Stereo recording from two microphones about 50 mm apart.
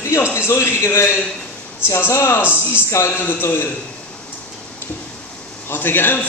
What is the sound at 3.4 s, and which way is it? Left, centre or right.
Speech, left.